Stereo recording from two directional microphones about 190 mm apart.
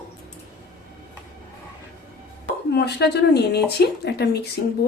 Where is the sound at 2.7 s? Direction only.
60° left (ahead or behind).